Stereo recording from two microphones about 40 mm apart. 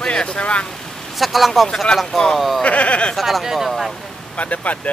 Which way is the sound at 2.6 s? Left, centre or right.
Left.